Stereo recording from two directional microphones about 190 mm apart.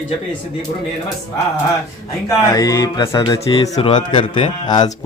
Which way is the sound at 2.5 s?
20° left (ahead or behind).